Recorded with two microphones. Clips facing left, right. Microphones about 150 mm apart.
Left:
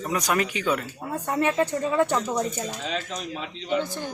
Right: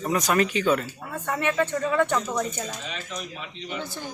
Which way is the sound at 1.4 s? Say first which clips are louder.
Left 2 dB; 35° left (ahead or behind).